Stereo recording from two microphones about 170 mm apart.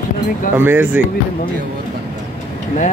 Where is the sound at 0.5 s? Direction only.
10° right (ahead or behind).